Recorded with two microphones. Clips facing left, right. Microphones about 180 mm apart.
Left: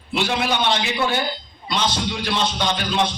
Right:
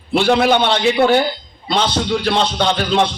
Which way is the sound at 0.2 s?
65° right (ahead or behind).